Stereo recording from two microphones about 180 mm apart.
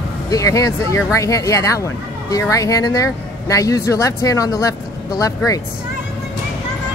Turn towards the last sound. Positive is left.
turn(degrees=20)  # may be behind; listen again after turning